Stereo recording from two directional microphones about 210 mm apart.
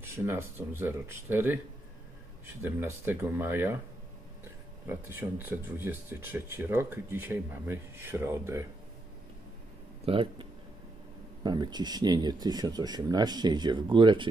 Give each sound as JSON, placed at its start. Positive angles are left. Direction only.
{"t": 0.0, "sound": "speech", "side_deg": -10}
{"t": 2.6, "sound": "speech", "side_deg": -10}
{"t": 4.8, "sound": "speech", "side_deg": -10}
{"t": 10.0, "sound": "speech", "side_deg": -25}
{"t": 11.4, "sound": "speech", "side_deg": -20}